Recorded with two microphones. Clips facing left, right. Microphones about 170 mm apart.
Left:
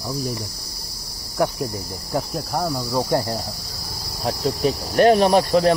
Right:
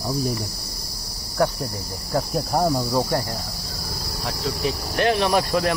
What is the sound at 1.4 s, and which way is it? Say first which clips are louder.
Cricket: even; 15° left (ahead or behind).